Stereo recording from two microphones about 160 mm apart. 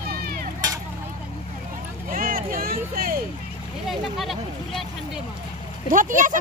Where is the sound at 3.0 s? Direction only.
65° right (ahead or behind).